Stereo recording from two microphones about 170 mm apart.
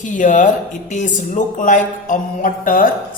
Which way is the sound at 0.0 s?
50° left (ahead or behind).